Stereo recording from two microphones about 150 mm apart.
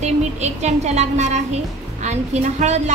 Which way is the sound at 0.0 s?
50° right (ahead or behind).